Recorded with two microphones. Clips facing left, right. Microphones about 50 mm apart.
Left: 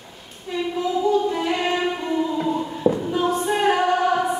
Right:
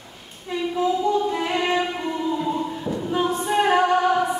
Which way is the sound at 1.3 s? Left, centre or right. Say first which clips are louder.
Left 1 dB; centre.